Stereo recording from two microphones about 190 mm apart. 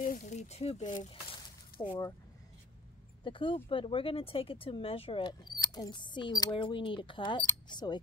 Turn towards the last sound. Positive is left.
turn(degrees=25)  # may be behind; listen again after turning